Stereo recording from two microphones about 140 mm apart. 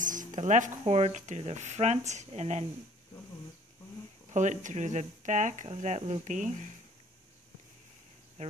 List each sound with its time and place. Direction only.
0.0 s speech: 65° right (ahead or behind)
4.3 s speech: 60° right (ahead or behind)